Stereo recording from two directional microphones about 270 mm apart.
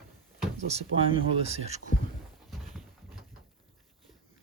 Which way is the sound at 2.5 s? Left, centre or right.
Centre.